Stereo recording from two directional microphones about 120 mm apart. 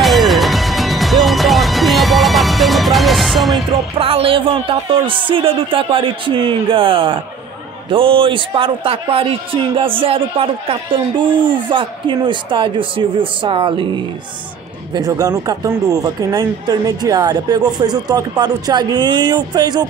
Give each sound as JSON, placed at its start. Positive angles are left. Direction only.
{"t": 0.0, "sound": "music", "side_deg": 0}
{"t": 4.0, "sound": "a man's voice", "side_deg": -50}
{"t": 15.0, "sound": "speech", "side_deg": -30}